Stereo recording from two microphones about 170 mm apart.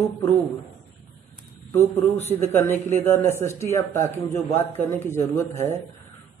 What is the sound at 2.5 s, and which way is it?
Speech, 15° left (ahead or behind).